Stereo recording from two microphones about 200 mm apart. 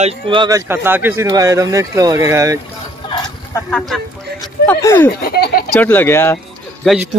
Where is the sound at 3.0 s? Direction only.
20° left (ahead or behind).